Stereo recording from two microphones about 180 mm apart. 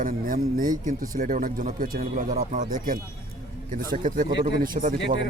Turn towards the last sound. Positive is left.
turn(degrees=-50)  # may be behind; listen again after turning